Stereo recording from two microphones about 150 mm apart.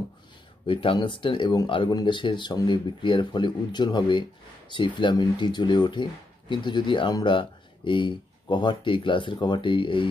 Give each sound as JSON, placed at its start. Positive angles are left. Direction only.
{"t": 0.7, "sound": "speech", "side_deg": 35}